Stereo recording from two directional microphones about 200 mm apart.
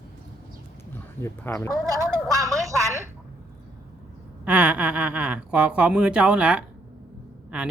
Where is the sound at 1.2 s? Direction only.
15° left (ahead or behind).